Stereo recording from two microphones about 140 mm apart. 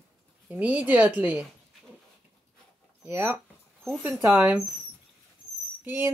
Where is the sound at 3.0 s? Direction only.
15° right (ahead or behind).